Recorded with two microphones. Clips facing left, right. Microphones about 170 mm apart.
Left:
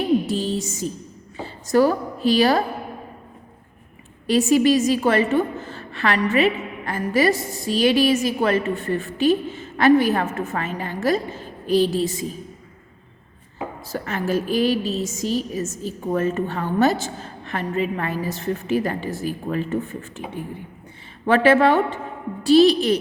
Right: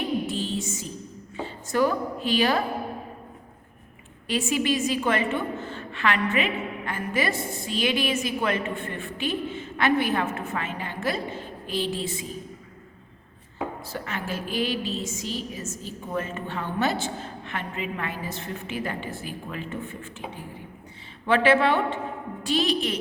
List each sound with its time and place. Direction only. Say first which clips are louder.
0.3 s music: left 5 dB; 40° left (ahead or behind)
1.4 s speech: left 6 dB; 35° left (ahead or behind)
4.3 s a woman's voice: left 9 dB; 40° left (ahead or behind)
13.8 s a woman's voice: left 7 dB; 40° left (ahead or behind)